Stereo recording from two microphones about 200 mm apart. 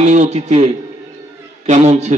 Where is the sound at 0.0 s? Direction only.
35° right (ahead or behind).